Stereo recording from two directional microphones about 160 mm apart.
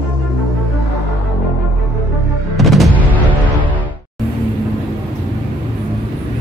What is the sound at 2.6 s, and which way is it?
Music, centre (ahead or behind).